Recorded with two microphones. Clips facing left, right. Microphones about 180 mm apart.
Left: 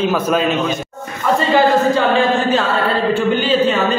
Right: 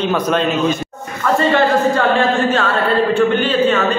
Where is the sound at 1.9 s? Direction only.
Centre (ahead or behind).